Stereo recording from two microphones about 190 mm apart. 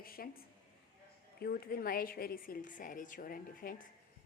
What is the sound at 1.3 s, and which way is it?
A woman's voice, 55° left (ahead or behind).